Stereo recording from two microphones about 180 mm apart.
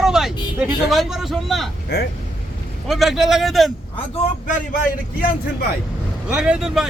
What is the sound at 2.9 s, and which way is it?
Speech, centre (ahead or behind).